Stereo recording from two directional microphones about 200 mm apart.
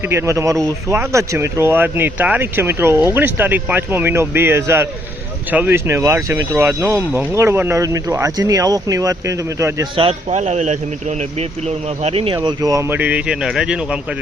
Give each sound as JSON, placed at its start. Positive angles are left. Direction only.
{"t": 0.1, "sound": "speech", "side_deg": -15}
{"t": 10.0, "sound": "a man's voice", "side_deg": -30}
{"t": 12.0, "sound": "speech", "side_deg": -30}